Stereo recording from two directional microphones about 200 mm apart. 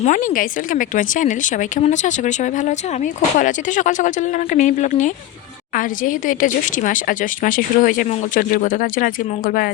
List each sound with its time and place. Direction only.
0.0 s a woman's voice: 40° left (ahead or behind)